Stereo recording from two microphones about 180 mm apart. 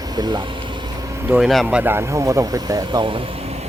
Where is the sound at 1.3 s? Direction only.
Centre (ahead or behind); by 3.0 s 20° right (ahead or behind).